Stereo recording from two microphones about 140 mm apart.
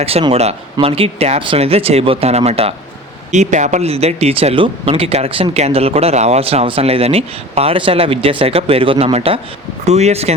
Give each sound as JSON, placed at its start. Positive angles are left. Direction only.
{"t": 0.0, "sound": "speech", "side_deg": -45}
{"t": 3.3, "sound": "speech", "side_deg": -60}